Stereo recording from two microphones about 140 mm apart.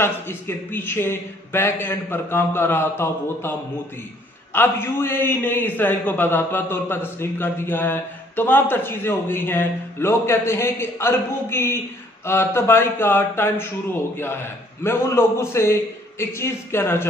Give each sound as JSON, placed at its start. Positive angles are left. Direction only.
{"t": 0.0, "sound": "a man's voice", "side_deg": 15}
{"t": 4.6, "sound": "a man's voice", "side_deg": 15}